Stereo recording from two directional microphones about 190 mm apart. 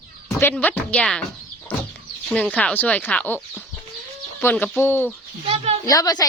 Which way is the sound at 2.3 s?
5° left (ahead or behind).